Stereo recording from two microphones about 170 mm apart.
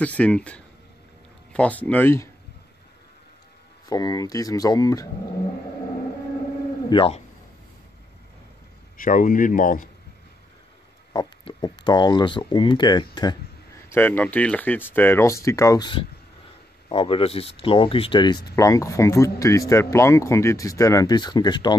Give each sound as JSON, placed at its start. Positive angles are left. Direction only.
{"t": 0.0, "sound": "speech", "side_deg": 5}
{"t": 3.9, "sound": "speech", "side_deg": 20}
{"t": 6.9, "sound": "speech", "side_deg": 30}
{"t": 8.9, "sound": "speech", "side_deg": 50}
{"t": 11.1, "sound": "speech", "side_deg": 25}
{"t": 13.8, "sound": "speech", "side_deg": 10}